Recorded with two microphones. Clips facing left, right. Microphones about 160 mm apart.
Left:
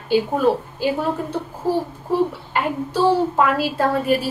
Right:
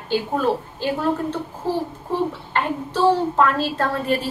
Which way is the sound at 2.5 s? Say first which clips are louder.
Left 2 dB; 10° left (ahead or behind).